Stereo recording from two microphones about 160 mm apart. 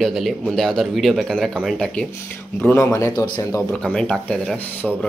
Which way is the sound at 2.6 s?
15° left (ahead or behind).